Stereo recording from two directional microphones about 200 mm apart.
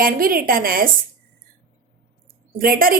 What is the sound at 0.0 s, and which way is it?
Speech, 45° right (ahead or behind).